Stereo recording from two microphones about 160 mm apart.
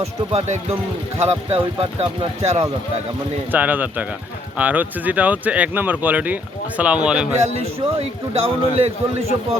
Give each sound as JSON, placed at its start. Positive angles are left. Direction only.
{"t": 0.0, "sound": "a man's voice", "side_deg": -40}
{"t": 3.5, "sound": "speech", "side_deg": -10}
{"t": 7.6, "sound": "a man's voice", "side_deg": -40}